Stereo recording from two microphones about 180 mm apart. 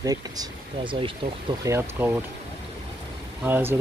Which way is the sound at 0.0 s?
20° right (ahead or behind).